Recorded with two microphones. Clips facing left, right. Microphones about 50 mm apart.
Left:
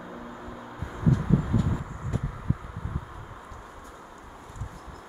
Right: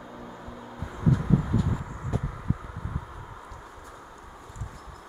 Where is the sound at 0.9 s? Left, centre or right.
Centre.